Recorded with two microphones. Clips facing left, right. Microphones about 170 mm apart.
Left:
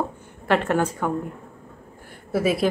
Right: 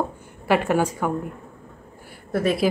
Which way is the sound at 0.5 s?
10° right (ahead or behind).